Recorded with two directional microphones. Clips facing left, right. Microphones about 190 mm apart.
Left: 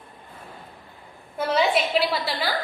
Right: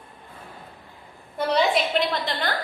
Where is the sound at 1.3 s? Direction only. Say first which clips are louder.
Even; centre (ahead or behind).